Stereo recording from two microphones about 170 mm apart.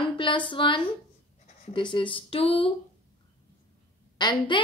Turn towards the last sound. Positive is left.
turn(degrees=25)  # may be behind; listen again after turning